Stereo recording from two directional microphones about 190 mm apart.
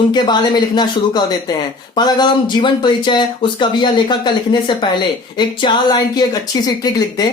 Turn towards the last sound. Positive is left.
turn(degrees=20)  # may be behind; listen again after turning